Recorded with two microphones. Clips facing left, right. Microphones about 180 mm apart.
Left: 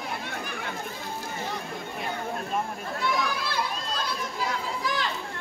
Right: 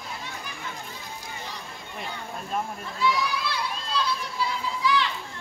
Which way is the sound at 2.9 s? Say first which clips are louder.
Right 2 dB; 55° left (ahead or behind).